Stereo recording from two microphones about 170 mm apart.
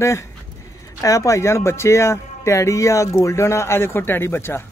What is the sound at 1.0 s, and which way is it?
A man's voice, 20° left (ahead or behind).